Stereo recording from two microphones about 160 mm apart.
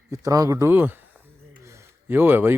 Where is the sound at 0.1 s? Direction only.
20° right (ahead or behind).